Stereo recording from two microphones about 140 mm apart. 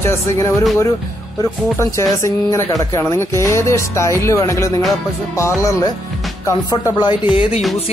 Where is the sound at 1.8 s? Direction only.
20° left (ahead or behind).